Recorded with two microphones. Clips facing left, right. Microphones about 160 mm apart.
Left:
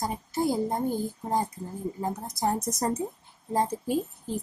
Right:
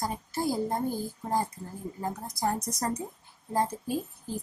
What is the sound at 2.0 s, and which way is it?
Speech, 20° left (ahead or behind).